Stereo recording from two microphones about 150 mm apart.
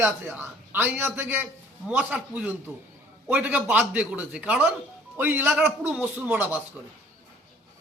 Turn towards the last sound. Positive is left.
turn(degrees=-10)  # may be behind; listen again after turning